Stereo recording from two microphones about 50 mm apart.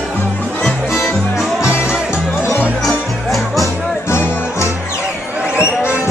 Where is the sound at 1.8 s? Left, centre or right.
Centre.